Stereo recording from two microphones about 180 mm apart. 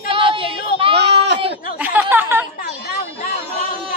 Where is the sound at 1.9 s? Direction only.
10° right (ahead or behind).